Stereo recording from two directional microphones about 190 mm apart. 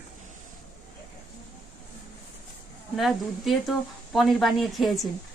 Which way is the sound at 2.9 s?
Centre (ahead or behind).